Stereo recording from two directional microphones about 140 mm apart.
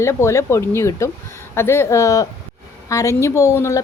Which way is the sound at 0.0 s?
20° left (ahead or behind).